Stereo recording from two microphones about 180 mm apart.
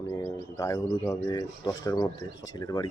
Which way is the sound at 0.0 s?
15° left (ahead or behind).